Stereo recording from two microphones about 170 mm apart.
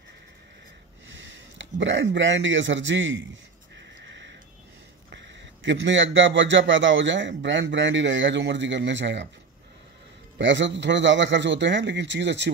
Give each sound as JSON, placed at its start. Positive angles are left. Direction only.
{"t": 1.0, "sound": "speech", "side_deg": -90}
{"t": 5.1, "sound": "a man's voice", "side_deg": -90}
{"t": 10.3, "sound": "a man's voice", "side_deg": -90}